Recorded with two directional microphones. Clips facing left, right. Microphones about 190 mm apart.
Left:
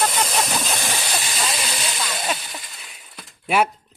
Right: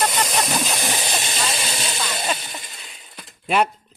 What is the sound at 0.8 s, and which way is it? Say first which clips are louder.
Hiss: right 2 dB; 20° right (ahead or behind).